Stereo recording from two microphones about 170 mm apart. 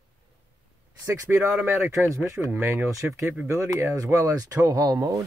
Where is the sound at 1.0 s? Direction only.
15° right (ahead or behind).